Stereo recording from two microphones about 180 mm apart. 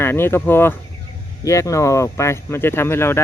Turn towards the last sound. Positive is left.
turn(degrees=15)  # may be behind; listen again after turning